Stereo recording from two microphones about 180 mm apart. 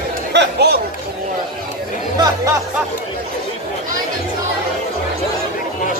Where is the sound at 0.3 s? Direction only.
70° right (ahead or behind).